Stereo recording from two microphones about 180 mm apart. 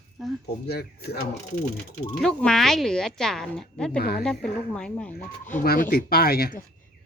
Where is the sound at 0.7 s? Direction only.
65° left (ahead or behind).